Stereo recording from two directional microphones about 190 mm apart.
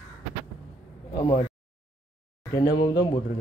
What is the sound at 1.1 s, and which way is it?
Speech, 25° left (ahead or behind).